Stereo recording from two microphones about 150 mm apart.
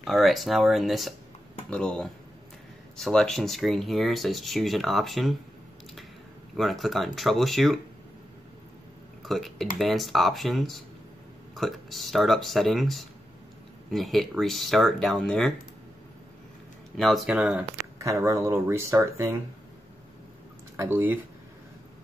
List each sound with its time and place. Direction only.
0.0 s speech: centre (ahead or behind)
6.5 s speech: centre (ahead or behind)
9.2 s speech: centre (ahead or behind)
16.9 s speech: centre (ahead or behind); by 19.3 s 20° right (ahead or behind)
20.7 s speech: 15° right (ahead or behind)